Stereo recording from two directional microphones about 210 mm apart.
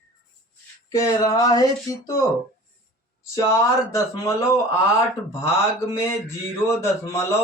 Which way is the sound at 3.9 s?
15° left (ahead or behind).